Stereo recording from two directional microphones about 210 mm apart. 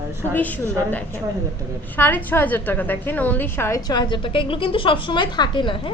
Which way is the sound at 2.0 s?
10° left (ahead or behind).